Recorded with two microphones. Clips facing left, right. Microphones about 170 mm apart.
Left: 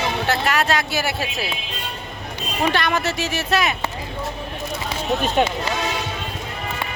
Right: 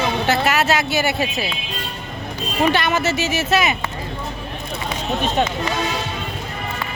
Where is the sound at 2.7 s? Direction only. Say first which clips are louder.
Right 2 dB; centre (ahead or behind).